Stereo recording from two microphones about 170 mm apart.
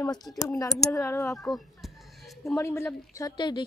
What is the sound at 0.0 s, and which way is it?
Speech, 20° left (ahead or behind).